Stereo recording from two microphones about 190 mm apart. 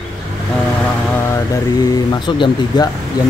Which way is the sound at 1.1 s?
15° left (ahead or behind).